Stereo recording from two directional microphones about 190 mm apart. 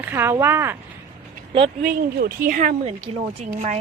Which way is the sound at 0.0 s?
10° right (ahead or behind).